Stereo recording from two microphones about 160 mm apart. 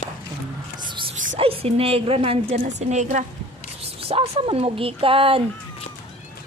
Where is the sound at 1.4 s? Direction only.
35° right (ahead or behind).